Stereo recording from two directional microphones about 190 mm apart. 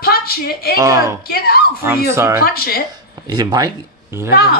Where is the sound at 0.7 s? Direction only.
15° right (ahead or behind).